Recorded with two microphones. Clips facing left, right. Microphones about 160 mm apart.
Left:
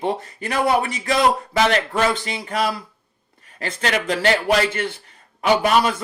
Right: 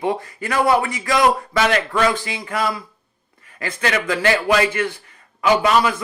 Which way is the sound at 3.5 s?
30° left (ahead or behind).